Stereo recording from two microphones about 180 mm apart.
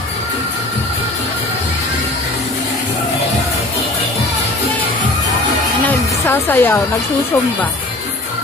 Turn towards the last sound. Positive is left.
turn(degrees=10)  # may be behind; listen again after turning